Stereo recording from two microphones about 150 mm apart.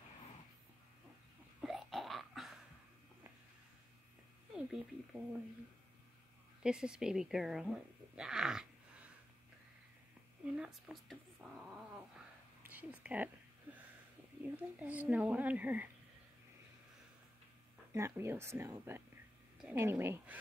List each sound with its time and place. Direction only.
1.6 s a sound: centre (ahead or behind)
4.6 s speech: 5° right (ahead or behind)
6.6 s speech: 5° right (ahead or behind)
10.4 s a woman's voice: 5° right (ahead or behind)
14.8 s a woman's voice: 10° right (ahead or behind)
17.9 s a woman's voice: 15° right (ahead or behind)